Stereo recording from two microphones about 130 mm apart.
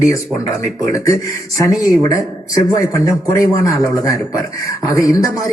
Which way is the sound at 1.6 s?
25° left (ahead or behind).